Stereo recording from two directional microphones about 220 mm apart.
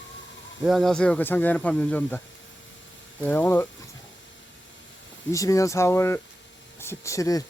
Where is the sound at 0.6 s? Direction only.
Centre (ahead or behind).